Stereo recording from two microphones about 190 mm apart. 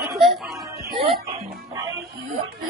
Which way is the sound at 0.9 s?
30° right (ahead or behind).